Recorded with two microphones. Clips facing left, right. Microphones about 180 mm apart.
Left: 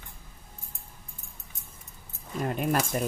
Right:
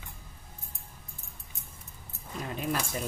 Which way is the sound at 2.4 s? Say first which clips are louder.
Left 5 dB; 55° left (ahead or behind).